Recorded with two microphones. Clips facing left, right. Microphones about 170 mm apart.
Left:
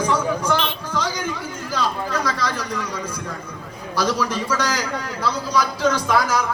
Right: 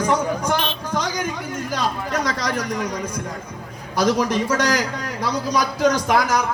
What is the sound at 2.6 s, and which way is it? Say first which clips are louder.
Speech: right 2 dB; 45° right (ahead or behind).